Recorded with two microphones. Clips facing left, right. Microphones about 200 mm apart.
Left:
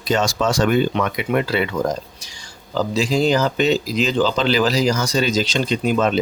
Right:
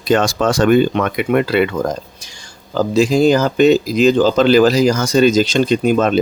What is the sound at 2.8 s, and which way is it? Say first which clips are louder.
Speech: right 6 dB; 50° right (ahead or behind).